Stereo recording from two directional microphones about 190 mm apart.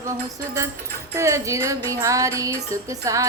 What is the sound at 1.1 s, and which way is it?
Music, 15° right (ahead or behind).